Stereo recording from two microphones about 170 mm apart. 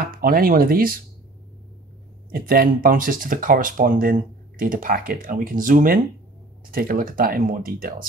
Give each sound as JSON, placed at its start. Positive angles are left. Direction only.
{"t": 0.1, "sound": "speech", "side_deg": -60}
{"t": 2.3, "sound": "speech", "side_deg": -55}